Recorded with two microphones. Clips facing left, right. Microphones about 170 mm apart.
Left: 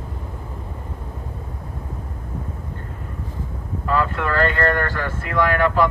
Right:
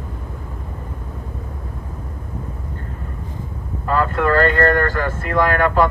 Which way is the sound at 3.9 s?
45° right (ahead or behind).